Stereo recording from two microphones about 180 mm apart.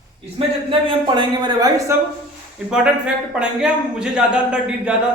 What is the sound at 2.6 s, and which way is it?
Speech, 5° right (ahead or behind).